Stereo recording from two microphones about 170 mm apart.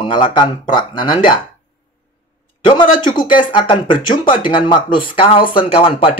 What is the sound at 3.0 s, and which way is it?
Speech, 25° left (ahead or behind).